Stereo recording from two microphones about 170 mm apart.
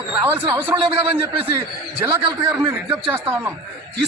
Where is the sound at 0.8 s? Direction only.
30° right (ahead or behind).